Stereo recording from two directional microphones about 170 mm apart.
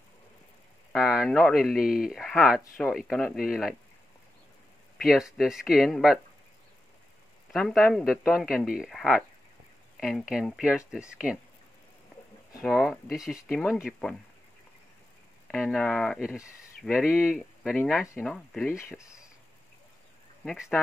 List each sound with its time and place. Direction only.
0.9 s speech: centre (ahead or behind)
5.0 s speech: 5° right (ahead or behind)
7.5 s speech: centre (ahead or behind)
12.6 s speech: centre (ahead or behind)
15.5 s speech: centre (ahead or behind)
18.7 s speech: 15° left (ahead or behind)
20.4 s speech: 5° right (ahead or behind)